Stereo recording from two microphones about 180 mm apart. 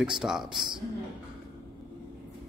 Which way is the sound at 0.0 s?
5° right (ahead or behind).